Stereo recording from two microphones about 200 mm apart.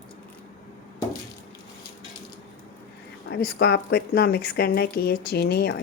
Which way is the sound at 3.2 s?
55° left (ahead or behind).